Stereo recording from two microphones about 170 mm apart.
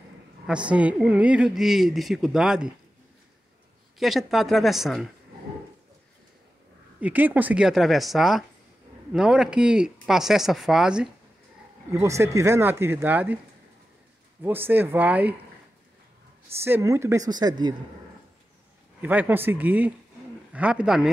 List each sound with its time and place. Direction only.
0.7 s speech: 5° right (ahead or behind)
4.0 s speech: centre (ahead or behind)
7.0 s speech: 10° right (ahead or behind)
11.9 s speech: 15° right (ahead or behind)
14.4 s speech: 10° right (ahead or behind)
16.5 s speech: 15° right (ahead or behind)
18.9 s speech: 10° right (ahead or behind)